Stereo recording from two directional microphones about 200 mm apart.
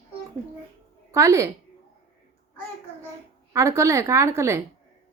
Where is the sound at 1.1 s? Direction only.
15° right (ahead or behind).